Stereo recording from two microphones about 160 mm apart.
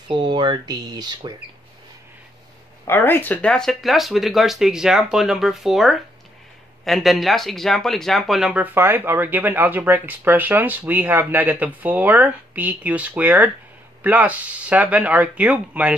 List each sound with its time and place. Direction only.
0.1 s speech: 30° right (ahead or behind)
2.8 s speech: 15° left (ahead or behind); by 15.9 s 10° right (ahead or behind)